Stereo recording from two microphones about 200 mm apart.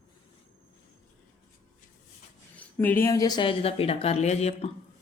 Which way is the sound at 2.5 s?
10° left (ahead or behind).